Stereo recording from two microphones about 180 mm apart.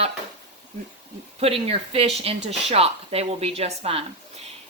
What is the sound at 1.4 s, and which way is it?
Speech, 35° right (ahead or behind).